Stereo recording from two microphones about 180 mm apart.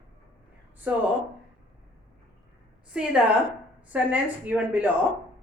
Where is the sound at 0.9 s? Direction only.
10° right (ahead or behind).